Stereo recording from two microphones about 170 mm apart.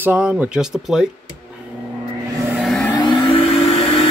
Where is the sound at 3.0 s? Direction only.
30° left (ahead or behind).